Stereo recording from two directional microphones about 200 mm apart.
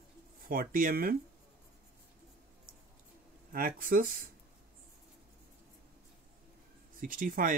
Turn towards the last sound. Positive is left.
turn(degrees=-45)  # may be behind; listen again after turning